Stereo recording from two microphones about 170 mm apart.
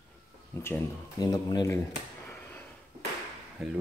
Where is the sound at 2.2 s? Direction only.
15° left (ahead or behind).